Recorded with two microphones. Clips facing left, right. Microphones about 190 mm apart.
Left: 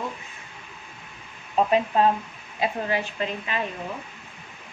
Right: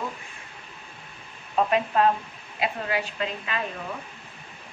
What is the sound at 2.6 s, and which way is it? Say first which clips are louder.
A woman's voice: left 2 dB; 25° left (ahead or behind).